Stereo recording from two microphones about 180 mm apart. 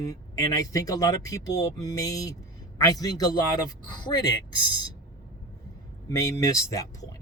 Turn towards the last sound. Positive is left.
turn(degrees=20)  # may be behind; listen again after turning